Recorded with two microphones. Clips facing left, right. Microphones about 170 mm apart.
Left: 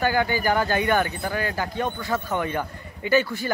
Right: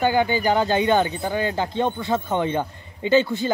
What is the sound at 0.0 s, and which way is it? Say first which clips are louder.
Speech: right 3 dB; 20° right (ahead or behind).